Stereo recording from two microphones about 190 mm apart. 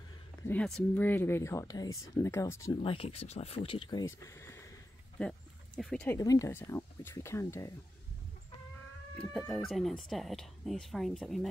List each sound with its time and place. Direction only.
0.4 s speech: 10° left (ahead or behind)
2.7 s speech: 25° left (ahead or behind)
4.2 s speech: 15° left (ahead or behind)
6.0 s speech: 20° left (ahead or behind)
9.5 s speech: centre (ahead or behind)